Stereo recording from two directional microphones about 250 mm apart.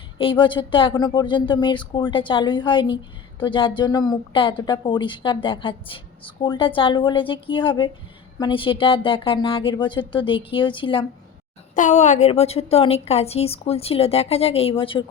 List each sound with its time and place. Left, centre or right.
0.2 s a woman's voice: centre
11.7 s a woman's voice: left